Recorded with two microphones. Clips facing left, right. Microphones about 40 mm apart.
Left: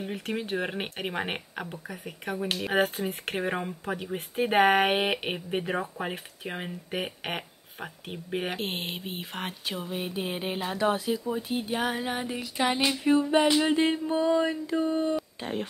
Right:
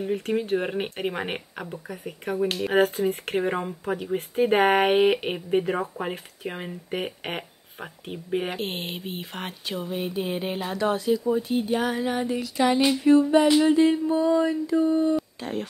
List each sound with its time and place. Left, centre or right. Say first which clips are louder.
0.0 s speech: right 7 dB; centre
13.7 s a sound: right 5 dB; left
15.4 s speech: right 2 dB; left